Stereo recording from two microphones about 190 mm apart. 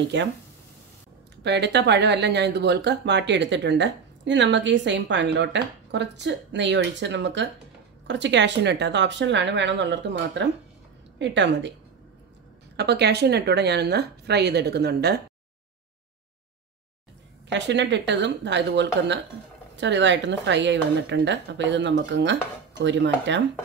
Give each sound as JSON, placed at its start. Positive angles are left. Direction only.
{"t": 0.1, "sound": "speech", "side_deg": -70}
{"t": 1.4, "sound": "speech", "side_deg": -65}
{"t": 12.7, "sound": "a woman's voice", "side_deg": -60}
{"t": 17.5, "sound": "speech", "side_deg": -70}